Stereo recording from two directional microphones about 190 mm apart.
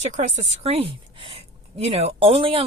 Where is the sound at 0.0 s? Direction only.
40° right (ahead or behind).